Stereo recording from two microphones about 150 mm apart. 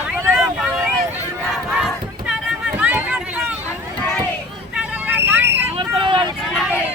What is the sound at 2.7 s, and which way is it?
Run, 10° right (ahead or behind).